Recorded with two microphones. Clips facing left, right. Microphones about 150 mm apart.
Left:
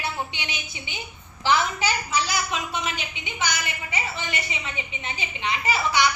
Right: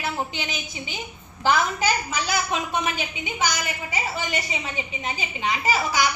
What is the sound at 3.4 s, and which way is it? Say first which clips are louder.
A woman's voice: right 2 dB; 40° right (ahead or behind).